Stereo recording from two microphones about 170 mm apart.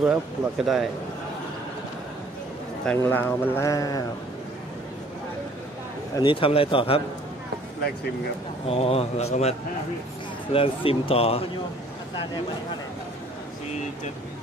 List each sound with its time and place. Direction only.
0.0 s speech: 5° right (ahead or behind)
3.0 s speech: 10° left (ahead or behind)
6.1 s a man's voice: 30° left (ahead or behind)
8.6 s a man's voice: 35° left (ahead or behind)